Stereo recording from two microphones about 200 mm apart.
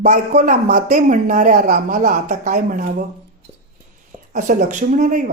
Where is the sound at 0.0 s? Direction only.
40° right (ahead or behind).